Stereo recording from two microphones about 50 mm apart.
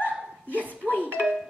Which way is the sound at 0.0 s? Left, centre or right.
Left.